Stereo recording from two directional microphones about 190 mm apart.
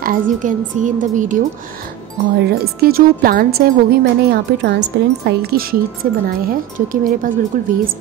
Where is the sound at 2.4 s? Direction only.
50° right (ahead or behind).